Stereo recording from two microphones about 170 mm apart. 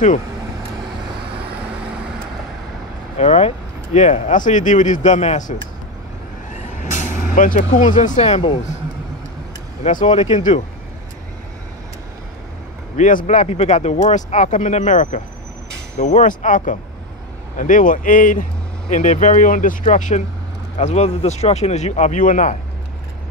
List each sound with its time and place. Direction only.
3.2 s speech: 40° left (ahead or behind)
9.8 s speech: 45° left (ahead or behind)
12.9 s speech: 45° left (ahead or behind)